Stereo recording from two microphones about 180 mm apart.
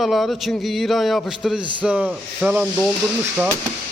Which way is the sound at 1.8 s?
5° right (ahead or behind).